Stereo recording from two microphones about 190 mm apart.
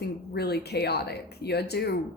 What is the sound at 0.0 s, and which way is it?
A woman's voice, 60° left (ahead or behind).